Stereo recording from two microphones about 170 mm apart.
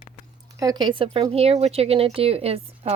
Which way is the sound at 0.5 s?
20° right (ahead or behind).